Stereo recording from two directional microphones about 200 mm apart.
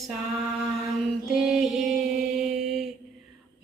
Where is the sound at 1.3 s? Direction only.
Centre (ahead or behind).